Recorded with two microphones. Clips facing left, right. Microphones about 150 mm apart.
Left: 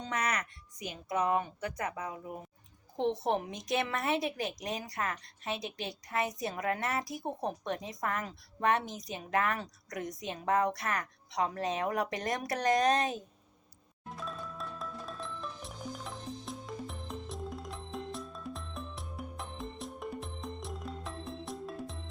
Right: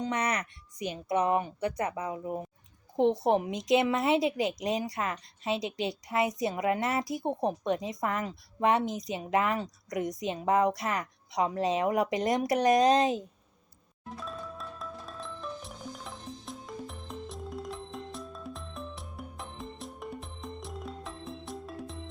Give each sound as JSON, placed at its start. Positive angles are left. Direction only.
{"t": 0.0, "sound": "speech", "side_deg": -25}
{"t": 3.2, "sound": "a woman's voice", "side_deg": -15}
{"t": 14.1, "sound": "music", "side_deg": 0}